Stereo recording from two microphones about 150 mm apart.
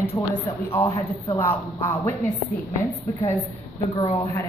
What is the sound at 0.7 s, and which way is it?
Speech, 20° left (ahead or behind).